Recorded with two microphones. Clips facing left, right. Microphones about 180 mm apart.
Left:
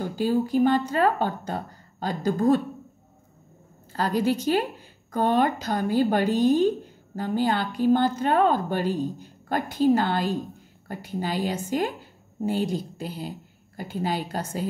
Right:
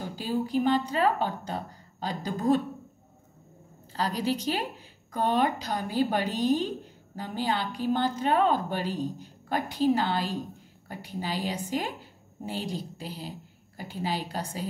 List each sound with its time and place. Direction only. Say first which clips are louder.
0.0 s speech: left 6 dB; 45° left (ahead or behind)
3.9 s speech: left 5 dB; 50° left (ahead or behind)